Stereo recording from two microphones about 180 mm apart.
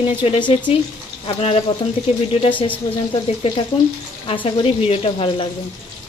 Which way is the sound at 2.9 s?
25° left (ahead or behind).